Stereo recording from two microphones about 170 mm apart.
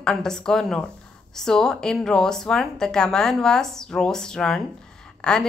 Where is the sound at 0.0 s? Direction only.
5° left (ahead or behind).